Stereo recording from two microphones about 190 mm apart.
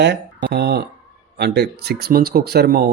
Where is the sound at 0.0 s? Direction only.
65° right (ahead or behind).